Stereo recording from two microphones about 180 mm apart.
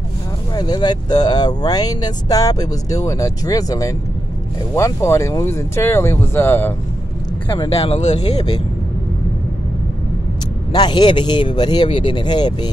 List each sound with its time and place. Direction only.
0.6 s speech: 25° left (ahead or behind)
7.4 s speech: 25° left (ahead or behind)
10.7 s speech: 25° left (ahead or behind)